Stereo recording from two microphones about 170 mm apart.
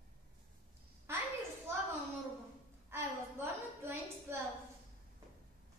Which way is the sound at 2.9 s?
15° right (ahead or behind).